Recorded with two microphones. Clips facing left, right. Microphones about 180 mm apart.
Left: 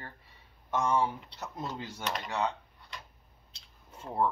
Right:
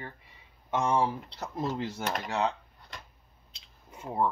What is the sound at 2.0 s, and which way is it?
Speech, 50° right (ahead or behind).